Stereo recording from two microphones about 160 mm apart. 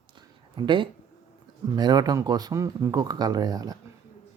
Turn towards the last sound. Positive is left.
turn(degrees=-25)  # may be behind; listen again after turning